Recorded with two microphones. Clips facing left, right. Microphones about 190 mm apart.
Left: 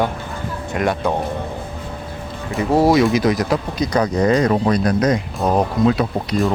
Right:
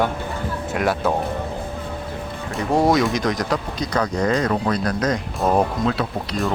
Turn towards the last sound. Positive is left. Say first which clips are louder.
# left 5 dB
turn(degrees=15)  # may be behind; listen again after turning